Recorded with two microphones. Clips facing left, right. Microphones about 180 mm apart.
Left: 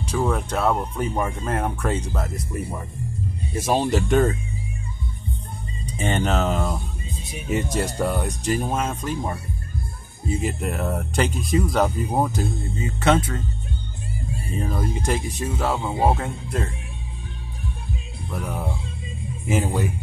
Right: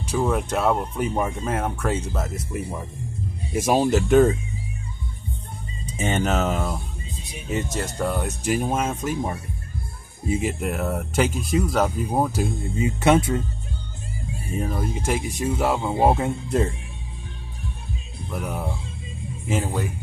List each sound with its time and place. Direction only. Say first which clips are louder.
0.0 s speech: right 1 dB; 10° right (ahead or behind)
5.9 s speech: even; 5° right (ahead or behind)
7.5 s speech: left 3 dB; 10° left (ahead or behind)
8.1 s speech: even; 5° right (ahead or behind)
14.5 s speech: even; 5° right (ahead or behind)
18.3 s speech: even; 10° right (ahead or behind)